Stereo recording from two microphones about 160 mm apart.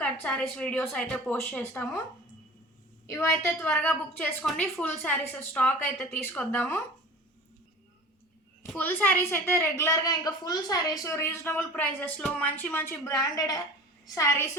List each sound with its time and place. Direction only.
0.0 s a sound: 5° left (ahead or behind)
0.5 s a woman's voice: 5° left (ahead or behind)
3.4 s a woman's voice: 10° left (ahead or behind)
8.6 s a woman's voice: 10° left (ahead or behind)